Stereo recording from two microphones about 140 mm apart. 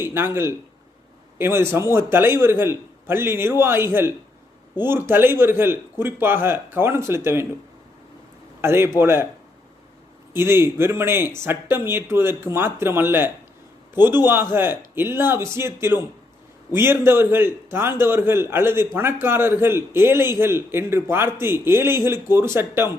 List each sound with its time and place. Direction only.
0.0 s a man's voice: 15° right (ahead or behind)
8.6 s a man's voice: 15° right (ahead or behind)
10.3 s a man's voice: 15° right (ahead or behind)